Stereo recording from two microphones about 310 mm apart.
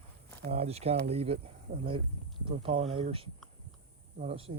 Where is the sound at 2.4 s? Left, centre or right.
Centre.